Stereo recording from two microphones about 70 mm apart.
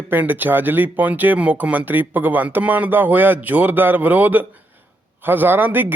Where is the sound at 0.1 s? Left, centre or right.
Right.